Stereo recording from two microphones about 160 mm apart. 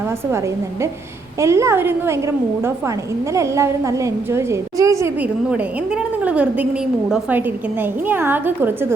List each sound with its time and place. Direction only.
0.3 s a woman's voice: 15° right (ahead or behind)
5.2 s a woman's voice: 5° right (ahead or behind)